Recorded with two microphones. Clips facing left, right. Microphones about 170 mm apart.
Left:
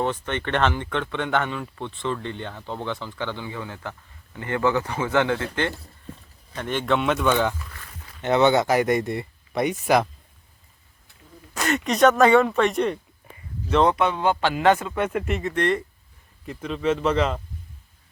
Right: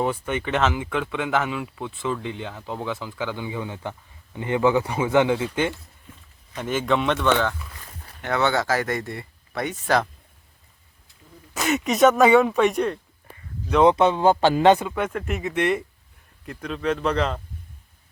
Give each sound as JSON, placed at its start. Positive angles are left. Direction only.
{"t": 0.0, "sound": "speech", "side_deg": -10}
{"t": 6.6, "sound": "speech", "side_deg": 0}
{"t": 11.5, "sound": "speech", "side_deg": 0}
{"t": 13.8, "sound": "speech", "side_deg": -25}
{"t": 14.6, "sound": "speech", "side_deg": -20}
{"t": 14.9, "sound": "speech", "side_deg": 0}
{"t": 16.5, "sound": "speech", "side_deg": 0}